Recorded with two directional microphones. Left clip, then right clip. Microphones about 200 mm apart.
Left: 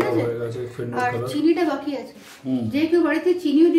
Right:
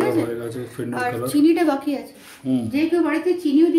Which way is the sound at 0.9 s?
50° right (ahead or behind).